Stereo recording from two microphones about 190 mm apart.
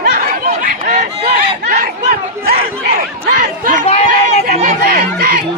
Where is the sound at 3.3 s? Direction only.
40° right (ahead or behind).